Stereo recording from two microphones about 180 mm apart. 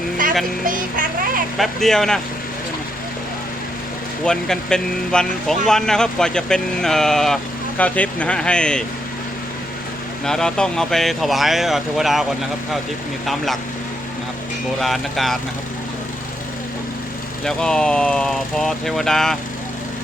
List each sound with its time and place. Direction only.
0.6 s speech: 50° right (ahead or behind)
1.5 s speech: centre (ahead or behind)
4.2 s speech: 5° left (ahead or behind)
10.2 s speech: 5° left (ahead or behind)
14.8 s speech: centre (ahead or behind)
17.4 s speech: 5° left (ahead or behind)